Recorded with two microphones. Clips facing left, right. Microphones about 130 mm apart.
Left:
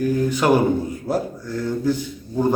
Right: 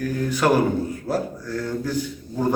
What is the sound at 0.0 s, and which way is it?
A man's voice, 15° left (ahead or behind).